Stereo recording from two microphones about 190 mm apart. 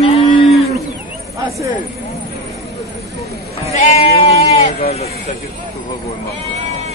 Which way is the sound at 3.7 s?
35° left (ahead or behind).